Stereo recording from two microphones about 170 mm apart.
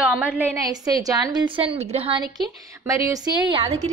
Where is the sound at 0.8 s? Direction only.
20° right (ahead or behind).